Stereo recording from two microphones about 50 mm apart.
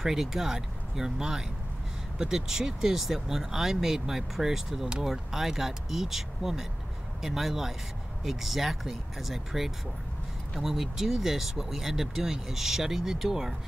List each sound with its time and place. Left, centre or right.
0.0 s speech: centre